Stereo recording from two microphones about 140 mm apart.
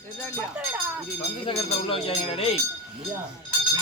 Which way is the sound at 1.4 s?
40° left (ahead or behind).